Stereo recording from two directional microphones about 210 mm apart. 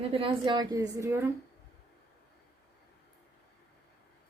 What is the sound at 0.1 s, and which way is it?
A woman's voice, 25° right (ahead or behind).